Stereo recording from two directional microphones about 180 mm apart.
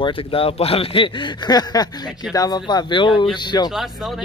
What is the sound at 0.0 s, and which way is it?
A man's voice, 30° left (ahead or behind).